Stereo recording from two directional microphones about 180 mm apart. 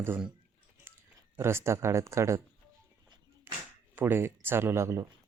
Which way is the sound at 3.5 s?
10° right (ahead or behind).